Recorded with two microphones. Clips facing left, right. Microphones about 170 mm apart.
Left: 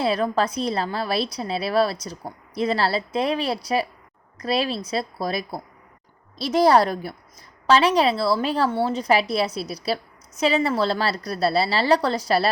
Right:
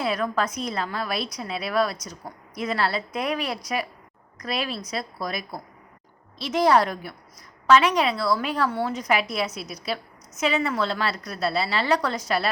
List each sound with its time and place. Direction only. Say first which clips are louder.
0.0 s a woman's voice: left 4 dB; 30° left (ahead or behind)